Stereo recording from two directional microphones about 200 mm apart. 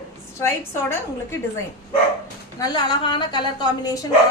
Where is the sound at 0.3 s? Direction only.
15° left (ahead or behind).